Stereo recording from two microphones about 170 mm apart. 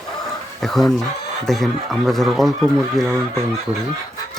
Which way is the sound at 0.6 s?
Centre (ahead or behind).